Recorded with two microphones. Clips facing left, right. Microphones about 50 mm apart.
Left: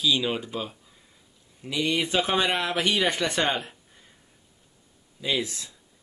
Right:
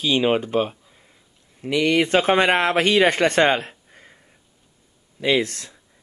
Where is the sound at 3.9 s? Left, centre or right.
Right.